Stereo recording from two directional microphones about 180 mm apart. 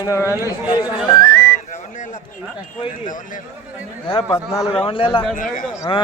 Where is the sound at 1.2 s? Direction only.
55° right (ahead or behind).